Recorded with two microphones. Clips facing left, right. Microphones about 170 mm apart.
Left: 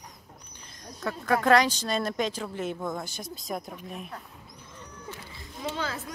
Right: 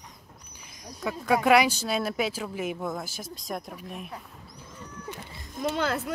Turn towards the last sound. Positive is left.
turn(degrees=-70)  # may be behind; listen again after turning